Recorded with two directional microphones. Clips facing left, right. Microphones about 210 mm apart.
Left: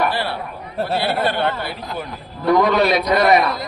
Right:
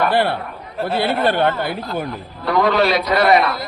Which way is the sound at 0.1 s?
55° right (ahead or behind).